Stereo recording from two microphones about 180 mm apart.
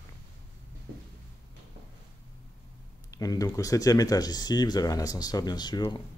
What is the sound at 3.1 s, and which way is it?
Speech, 20° left (ahead or behind).